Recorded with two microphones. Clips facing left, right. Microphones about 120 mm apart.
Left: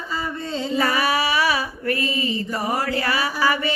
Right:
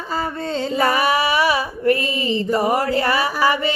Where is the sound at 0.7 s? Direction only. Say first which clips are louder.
Right 3 dB; 35° right (ahead or behind).